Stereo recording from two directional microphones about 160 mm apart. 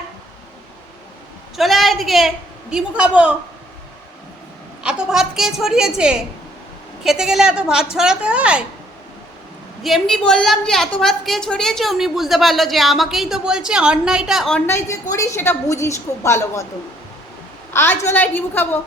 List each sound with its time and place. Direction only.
1.5 s a woman's voice: centre (ahead or behind)
4.8 s a woman's voice: 5° right (ahead or behind)
9.8 s a woman's voice: centre (ahead or behind)
15.1 s a woman's voice: 20° left (ahead or behind)
17.7 s a woman's voice: 15° left (ahead or behind)